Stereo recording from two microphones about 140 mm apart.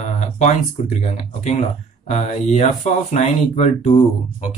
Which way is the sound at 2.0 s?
55° left (ahead or behind).